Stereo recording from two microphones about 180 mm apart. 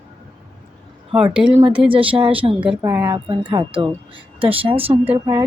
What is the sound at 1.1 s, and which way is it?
Speech, 5° right (ahead or behind).